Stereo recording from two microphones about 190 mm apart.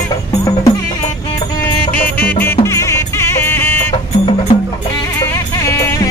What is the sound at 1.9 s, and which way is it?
Music, 10° left (ahead or behind).